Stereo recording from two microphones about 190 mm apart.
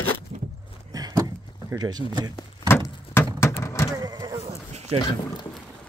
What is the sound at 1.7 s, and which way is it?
Speech, 20° right (ahead or behind).